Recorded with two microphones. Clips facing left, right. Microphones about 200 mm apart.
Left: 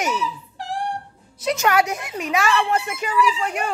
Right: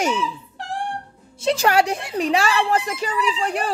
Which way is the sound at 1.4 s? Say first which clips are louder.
Right 2 dB; 30° right (ahead or behind).